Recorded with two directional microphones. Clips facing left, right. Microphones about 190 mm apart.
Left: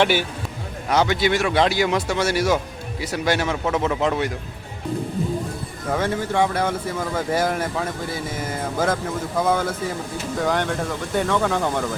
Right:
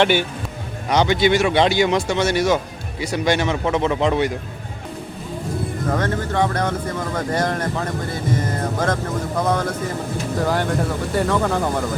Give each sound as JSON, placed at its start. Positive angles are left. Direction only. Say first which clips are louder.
{"t": 0.0, "sound": "speech", "louder": "right 2 dB", "side_deg": 5}
{"t": 5.9, "sound": "speech", "louder": "left 1 dB", "side_deg": 10}